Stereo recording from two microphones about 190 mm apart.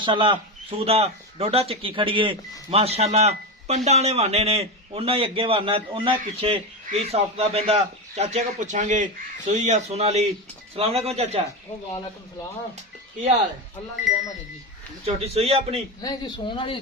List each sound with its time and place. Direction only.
0.0 s a man's voice: 25° right (ahead or behind)
14.1 s speech: centre (ahead or behind)
15.0 s a man's voice: 30° right (ahead or behind)
16.0 s speech: 20° left (ahead or behind)